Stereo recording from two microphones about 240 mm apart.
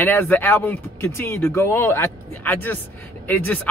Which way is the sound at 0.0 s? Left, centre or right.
Centre.